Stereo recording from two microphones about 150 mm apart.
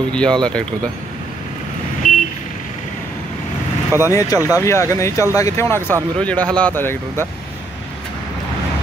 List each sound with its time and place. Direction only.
0.1 s speech: 5° left (ahead or behind)
2.0 s vehicle: 60° left (ahead or behind)
4.1 s speech: 20° left (ahead or behind)
4.4 s speech: 15° right (ahead or behind)
4.6 s speech: 20° left (ahead or behind)